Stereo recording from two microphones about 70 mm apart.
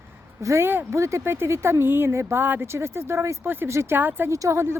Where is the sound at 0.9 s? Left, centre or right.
Right.